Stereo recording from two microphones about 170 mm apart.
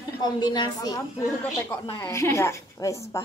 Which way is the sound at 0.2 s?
25° left (ahead or behind).